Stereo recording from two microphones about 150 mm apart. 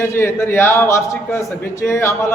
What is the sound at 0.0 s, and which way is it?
A man's voice, 15° left (ahead or behind).